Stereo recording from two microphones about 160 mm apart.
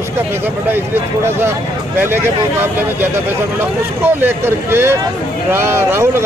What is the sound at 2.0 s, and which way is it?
Speech, 15° right (ahead or behind).